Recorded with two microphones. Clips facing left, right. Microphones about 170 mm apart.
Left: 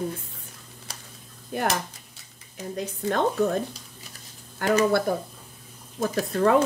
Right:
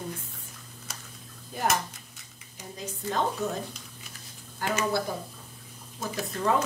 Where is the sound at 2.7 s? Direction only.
60° left (ahead or behind).